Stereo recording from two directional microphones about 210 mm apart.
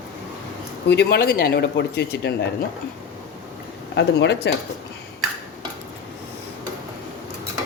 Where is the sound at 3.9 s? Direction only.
55° left (ahead or behind).